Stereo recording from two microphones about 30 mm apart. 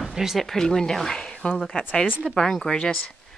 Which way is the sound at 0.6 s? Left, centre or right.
Centre.